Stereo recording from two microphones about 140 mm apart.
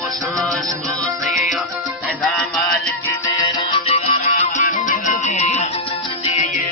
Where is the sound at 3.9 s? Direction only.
45° left (ahead or behind).